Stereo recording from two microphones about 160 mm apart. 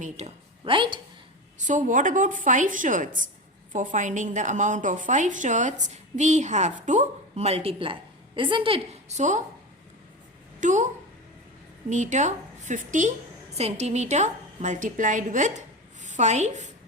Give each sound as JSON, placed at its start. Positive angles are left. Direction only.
{"t": 0.0, "sound": "a woman's voice", "side_deg": -45}
{"t": 1.5, "sound": "a woman's voice", "side_deg": -50}
{"t": 10.6, "sound": "a woman's voice", "side_deg": -50}
{"t": 11.9, "sound": "a woman's voice", "side_deg": -50}